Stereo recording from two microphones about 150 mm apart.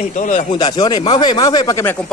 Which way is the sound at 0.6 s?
30° left (ahead or behind).